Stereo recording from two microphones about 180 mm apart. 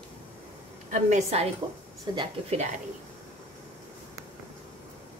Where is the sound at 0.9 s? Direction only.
40° right (ahead or behind).